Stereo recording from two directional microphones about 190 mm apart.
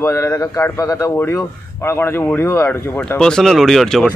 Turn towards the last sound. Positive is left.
turn(degrees=5)  # may be behind; listen again after turning